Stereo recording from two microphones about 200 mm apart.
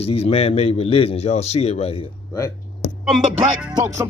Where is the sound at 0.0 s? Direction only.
30° left (ahead or behind).